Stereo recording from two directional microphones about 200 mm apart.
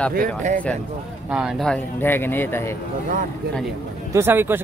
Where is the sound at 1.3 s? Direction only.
5° right (ahead or behind); by 2.8 s 10° left (ahead or behind).